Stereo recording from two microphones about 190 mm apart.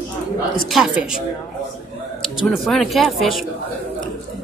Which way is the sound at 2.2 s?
Centre (ahead or behind).